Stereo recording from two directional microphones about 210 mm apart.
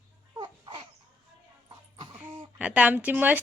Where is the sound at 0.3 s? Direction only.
20° right (ahead or behind).